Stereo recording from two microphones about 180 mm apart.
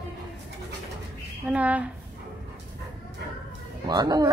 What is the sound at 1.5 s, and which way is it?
Speech, 10° right (ahead or behind).